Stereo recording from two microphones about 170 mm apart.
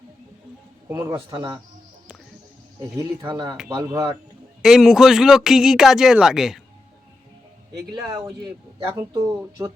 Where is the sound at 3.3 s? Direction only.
20° right (ahead or behind).